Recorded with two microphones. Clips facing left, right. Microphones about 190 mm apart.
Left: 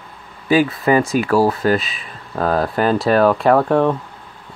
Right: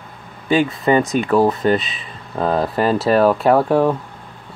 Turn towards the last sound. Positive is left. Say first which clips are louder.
# even
turn(degrees=-5)  # may be behind; listen again after turning